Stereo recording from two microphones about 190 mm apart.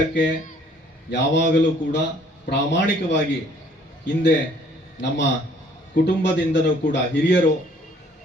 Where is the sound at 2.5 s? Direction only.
65° left (ahead or behind).